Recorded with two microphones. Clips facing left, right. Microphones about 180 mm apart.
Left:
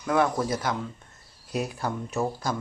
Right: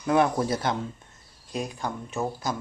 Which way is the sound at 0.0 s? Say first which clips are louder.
Right 2 dB; 20° right (ahead or behind).